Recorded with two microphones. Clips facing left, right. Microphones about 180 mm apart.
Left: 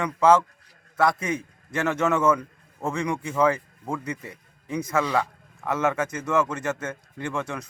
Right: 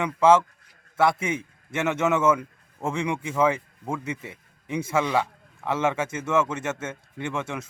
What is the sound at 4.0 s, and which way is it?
Speech, 25° right (ahead or behind).